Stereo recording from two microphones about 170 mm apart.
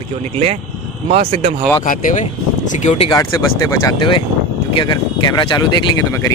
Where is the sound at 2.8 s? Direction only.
40° left (ahead or behind).